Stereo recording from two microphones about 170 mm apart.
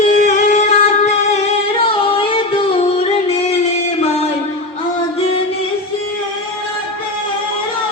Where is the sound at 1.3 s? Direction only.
35° left (ahead or behind).